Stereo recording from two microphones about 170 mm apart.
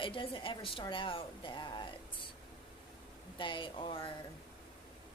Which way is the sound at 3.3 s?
30° left (ahead or behind).